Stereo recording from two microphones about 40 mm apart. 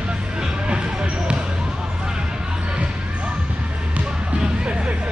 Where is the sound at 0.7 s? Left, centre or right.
Right.